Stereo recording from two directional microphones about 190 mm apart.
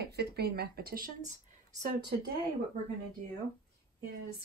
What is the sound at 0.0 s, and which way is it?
Speech, 60° right (ahead or behind).